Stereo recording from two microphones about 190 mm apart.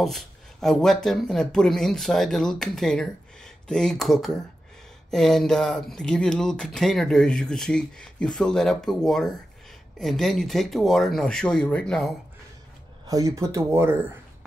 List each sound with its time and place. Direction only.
0.0 s speech: centre (ahead or behind)
13.0 s speech: 20° right (ahead or behind)